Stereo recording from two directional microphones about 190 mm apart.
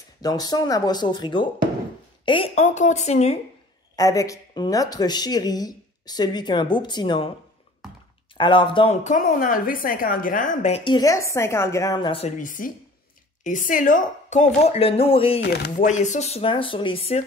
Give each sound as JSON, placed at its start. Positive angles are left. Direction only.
{"t": 0.2, "sound": "a woman's voice", "side_deg": 20}
{"t": 3.9, "sound": "a woman's voice", "side_deg": 20}
{"t": 8.4, "sound": "a woman's voice", "side_deg": 25}
{"t": 9.0, "sound": "a woman's voice", "side_deg": 45}
{"t": 15.4, "sound": "speech", "side_deg": 60}
{"t": 15.7, "sound": "a woman's voice", "side_deg": 40}